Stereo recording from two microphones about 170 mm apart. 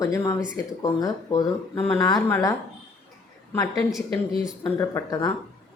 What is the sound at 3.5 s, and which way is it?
Speech, 20° left (ahead or behind).